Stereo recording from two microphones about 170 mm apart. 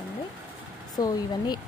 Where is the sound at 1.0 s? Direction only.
20° left (ahead or behind).